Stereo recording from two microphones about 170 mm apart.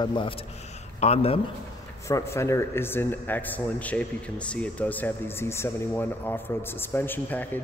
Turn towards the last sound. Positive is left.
turn(degrees=10)  # may be behind; listen again after turning